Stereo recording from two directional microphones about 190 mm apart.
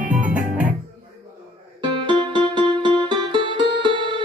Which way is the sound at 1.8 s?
25° right (ahead or behind).